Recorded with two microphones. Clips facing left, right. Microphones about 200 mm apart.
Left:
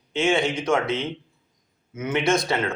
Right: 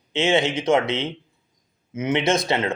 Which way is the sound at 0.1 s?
20° right (ahead or behind).